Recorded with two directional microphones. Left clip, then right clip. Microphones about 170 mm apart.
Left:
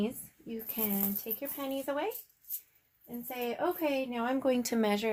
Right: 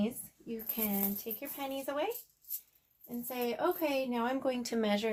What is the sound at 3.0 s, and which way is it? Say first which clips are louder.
Speech: even; 20° left (ahead or behind).